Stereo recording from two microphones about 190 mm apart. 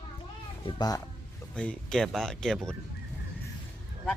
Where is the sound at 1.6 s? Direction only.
5° left (ahead or behind).